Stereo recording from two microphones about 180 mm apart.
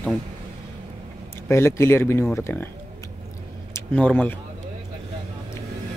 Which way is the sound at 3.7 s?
5° left (ahead or behind).